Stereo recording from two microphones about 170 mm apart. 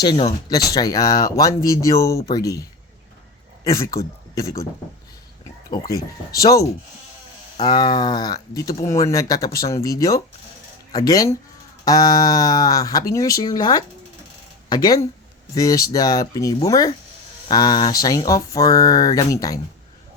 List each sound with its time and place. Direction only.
0.0 s speech: 25° left (ahead or behind)
5.8 s speech: 20° left (ahead or behind)